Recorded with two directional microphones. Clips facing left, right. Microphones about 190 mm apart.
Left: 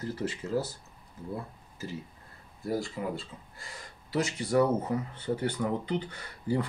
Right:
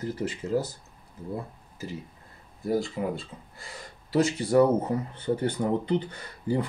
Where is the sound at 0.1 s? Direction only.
15° right (ahead or behind).